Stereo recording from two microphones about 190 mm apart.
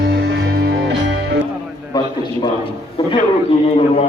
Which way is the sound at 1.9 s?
20° left (ahead or behind).